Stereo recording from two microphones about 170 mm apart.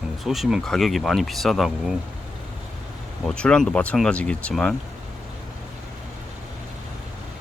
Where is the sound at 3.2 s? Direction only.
5° left (ahead or behind).